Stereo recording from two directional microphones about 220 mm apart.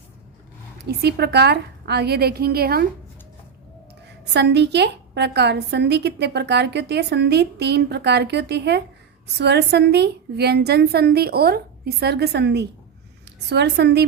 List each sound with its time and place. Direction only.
0.8 s a woman's voice: 50° right (ahead or behind)
4.4 s a woman's voice: 50° right (ahead or behind)